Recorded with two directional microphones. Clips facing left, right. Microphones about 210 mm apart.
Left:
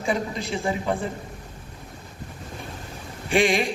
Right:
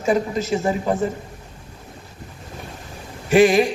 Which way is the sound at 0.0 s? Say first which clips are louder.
Right 6 dB; 40° right (ahead or behind).